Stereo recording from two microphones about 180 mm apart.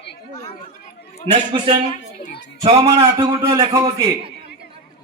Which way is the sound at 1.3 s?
30° right (ahead or behind).